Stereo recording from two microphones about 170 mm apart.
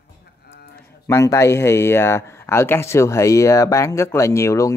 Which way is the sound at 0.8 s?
15° left (ahead or behind).